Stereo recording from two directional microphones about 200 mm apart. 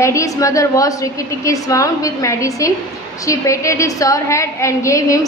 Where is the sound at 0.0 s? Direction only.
15° left (ahead or behind).